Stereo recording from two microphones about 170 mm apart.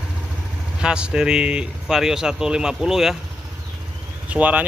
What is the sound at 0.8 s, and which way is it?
Speech, 5° right (ahead or behind).